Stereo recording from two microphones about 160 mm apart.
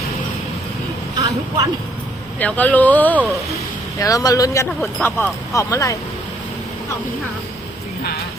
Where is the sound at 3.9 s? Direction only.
20° left (ahead or behind).